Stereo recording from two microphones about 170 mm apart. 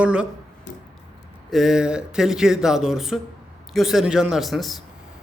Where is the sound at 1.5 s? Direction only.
Centre (ahead or behind).